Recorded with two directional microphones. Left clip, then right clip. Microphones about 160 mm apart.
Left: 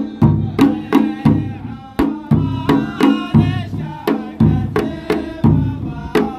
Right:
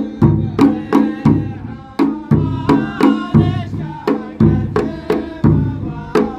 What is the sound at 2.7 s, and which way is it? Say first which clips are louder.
Music: right 1 dB; 15° left (ahead or behind).